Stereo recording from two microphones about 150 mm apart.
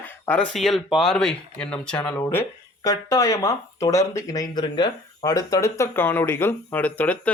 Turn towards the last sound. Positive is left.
turn(degrees=10)  # may be behind; listen again after turning